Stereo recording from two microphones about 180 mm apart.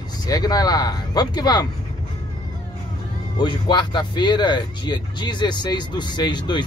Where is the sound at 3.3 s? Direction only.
25° left (ahead or behind).